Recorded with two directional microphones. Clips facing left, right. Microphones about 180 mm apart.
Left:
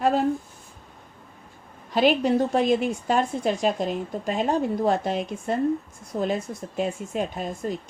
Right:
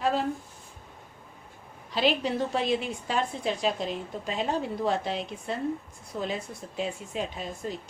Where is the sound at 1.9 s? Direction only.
50° left (ahead or behind).